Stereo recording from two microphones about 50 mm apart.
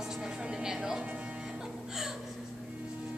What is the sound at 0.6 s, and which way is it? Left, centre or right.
Speech, centre.